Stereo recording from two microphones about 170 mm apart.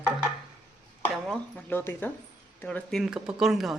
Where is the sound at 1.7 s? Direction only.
15° left (ahead or behind).